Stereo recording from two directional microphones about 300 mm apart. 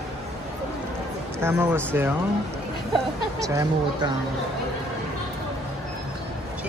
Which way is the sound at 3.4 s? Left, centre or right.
Centre.